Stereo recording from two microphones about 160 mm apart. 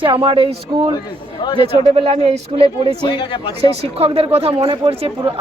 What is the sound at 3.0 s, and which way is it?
Speech, 35° left (ahead or behind).